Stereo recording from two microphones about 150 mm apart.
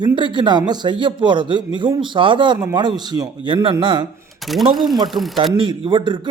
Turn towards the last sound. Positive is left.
turn(degrees=-30)  # may be behind; listen again after turning